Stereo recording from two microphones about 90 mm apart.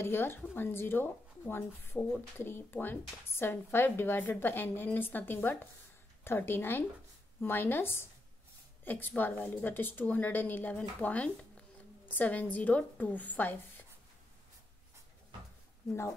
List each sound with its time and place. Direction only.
0.0 s speech: 25° left (ahead or behind)